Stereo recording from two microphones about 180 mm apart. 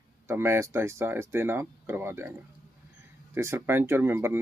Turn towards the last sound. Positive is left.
turn(degrees=-10)  # may be behind; listen again after turning